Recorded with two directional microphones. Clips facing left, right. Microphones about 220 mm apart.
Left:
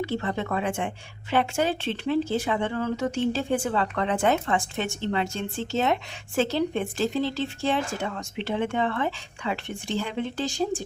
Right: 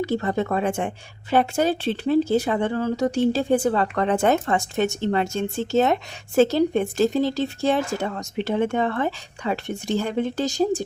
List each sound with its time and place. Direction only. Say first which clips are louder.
0.0 s a woman's voice: right 5 dB; 40° right (ahead or behind)